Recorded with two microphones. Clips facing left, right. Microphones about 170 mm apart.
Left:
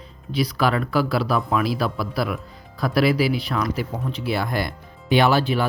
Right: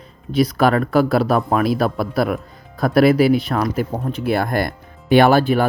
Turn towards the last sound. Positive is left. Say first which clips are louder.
# right 5 dB
turn(degrees=-50)  # may be behind; listen again after turning